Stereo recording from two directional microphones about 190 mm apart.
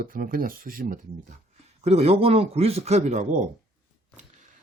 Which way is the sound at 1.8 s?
30° right (ahead or behind).